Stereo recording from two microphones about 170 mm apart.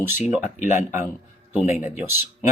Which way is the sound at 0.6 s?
45° left (ahead or behind).